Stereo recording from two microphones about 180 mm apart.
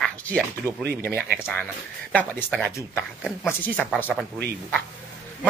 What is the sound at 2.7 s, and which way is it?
Speech, 15° left (ahead or behind).